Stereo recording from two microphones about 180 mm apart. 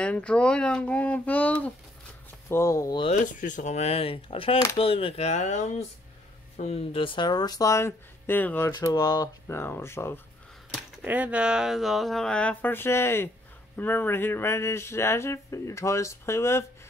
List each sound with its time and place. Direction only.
0.0 s speech: 5° left (ahead or behind)
3.3 s speech: 45° left (ahead or behind); by 10.2 s 15° left (ahead or behind)
10.7 s speech: 5° right (ahead or behind); by 16.6 s 15° left (ahead or behind)